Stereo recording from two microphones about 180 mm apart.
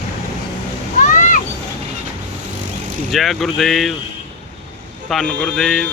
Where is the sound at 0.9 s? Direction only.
45° left (ahead or behind).